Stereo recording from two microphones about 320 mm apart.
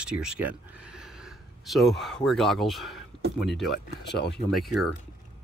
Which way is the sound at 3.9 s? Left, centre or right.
Left.